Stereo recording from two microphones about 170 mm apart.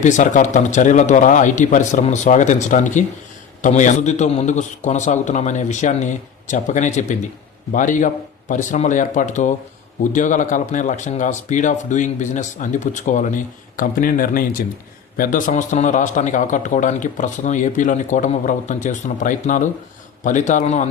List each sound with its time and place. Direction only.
0.0 s a man's voice: 45° left (ahead or behind)